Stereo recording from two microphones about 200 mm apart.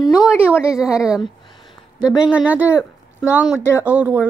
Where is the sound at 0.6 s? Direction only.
5° right (ahead or behind).